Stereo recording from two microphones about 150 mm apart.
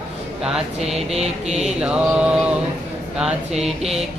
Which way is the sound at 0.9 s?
45° right (ahead or behind).